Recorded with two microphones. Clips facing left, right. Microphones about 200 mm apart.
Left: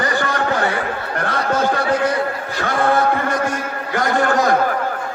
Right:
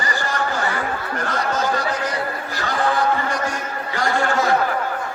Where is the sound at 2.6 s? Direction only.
55° left (ahead or behind).